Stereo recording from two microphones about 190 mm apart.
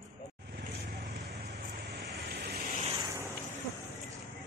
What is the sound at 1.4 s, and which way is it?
Waves, 60° right (ahead or behind).